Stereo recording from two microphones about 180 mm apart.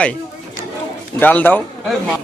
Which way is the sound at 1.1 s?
10° left (ahead or behind).